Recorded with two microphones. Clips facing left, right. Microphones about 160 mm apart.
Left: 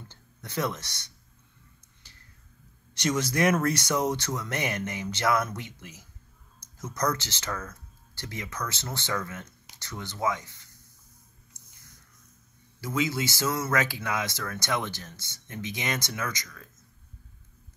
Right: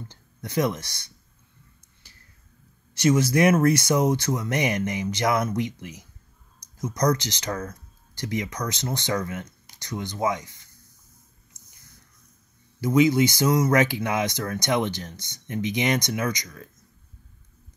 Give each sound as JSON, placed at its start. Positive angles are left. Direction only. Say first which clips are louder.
{"t": 0.1, "sound": "speech", "louder": "right 7 dB", "side_deg": -15}
{"t": 2.0, "sound": "a sound", "louder": "right 1 dB", "side_deg": -10}
{"t": 2.9, "sound": "speech", "louder": "right 7 dB", "side_deg": -10}
{"t": 12.8, "sound": "speech", "louder": "right 10 dB", "side_deg": -20}